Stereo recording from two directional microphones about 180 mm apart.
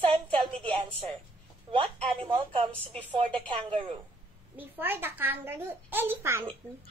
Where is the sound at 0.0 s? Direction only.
30° right (ahead or behind).